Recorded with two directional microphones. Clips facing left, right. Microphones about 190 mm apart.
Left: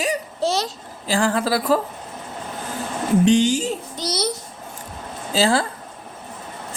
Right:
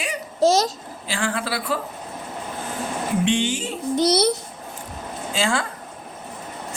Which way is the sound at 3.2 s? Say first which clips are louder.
Left 7 dB; 40° left (ahead or behind).